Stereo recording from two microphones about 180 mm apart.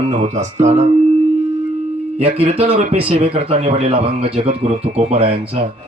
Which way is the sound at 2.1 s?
35° right (ahead or behind).